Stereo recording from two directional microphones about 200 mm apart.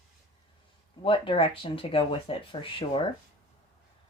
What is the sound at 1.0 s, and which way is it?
Speech, 25° left (ahead or behind).